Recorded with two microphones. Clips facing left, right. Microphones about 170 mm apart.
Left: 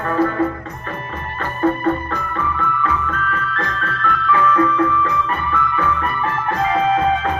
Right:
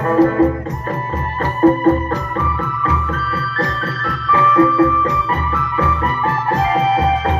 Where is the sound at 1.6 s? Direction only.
35° right (ahead or behind).